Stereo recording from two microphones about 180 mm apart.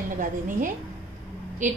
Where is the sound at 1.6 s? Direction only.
45° right (ahead or behind).